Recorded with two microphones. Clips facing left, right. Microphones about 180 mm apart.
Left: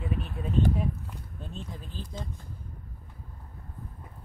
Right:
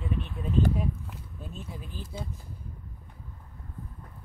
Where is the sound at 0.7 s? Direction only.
5° right (ahead or behind).